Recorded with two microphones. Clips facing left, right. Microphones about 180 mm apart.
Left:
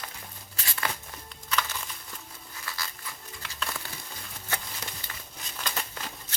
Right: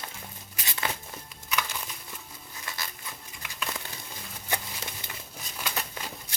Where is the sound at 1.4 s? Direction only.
10° right (ahead or behind).